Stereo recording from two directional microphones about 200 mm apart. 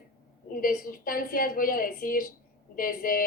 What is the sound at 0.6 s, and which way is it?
A woman's voice, 45° left (ahead or behind).